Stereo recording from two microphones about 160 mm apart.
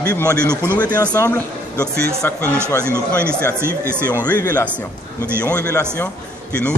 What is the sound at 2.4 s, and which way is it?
Speech, 15° right (ahead or behind).